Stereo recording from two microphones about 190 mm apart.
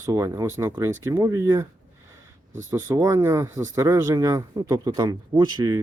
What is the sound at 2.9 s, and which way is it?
Speech, 15° right (ahead or behind).